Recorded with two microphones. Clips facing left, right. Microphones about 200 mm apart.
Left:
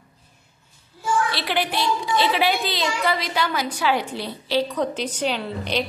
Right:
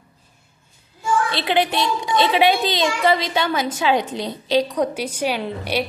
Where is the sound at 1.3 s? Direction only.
20° right (ahead or behind).